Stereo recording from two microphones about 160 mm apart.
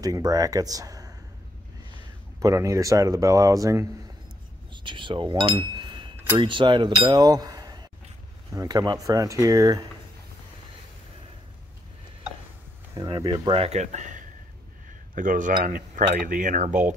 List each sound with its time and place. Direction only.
0.0 s speech: 25° right (ahead or behind)
2.4 s speech: 20° right (ahead or behind)
4.8 s speech: 30° right (ahead or behind)
6.4 s a sound: 30° right (ahead or behind)
8.5 s speech: 25° right (ahead or behind)
12.9 s speech: 25° right (ahead or behind); by 16.8 s 50° right (ahead or behind)